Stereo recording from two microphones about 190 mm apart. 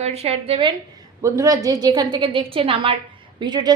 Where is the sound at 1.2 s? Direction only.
15° right (ahead or behind).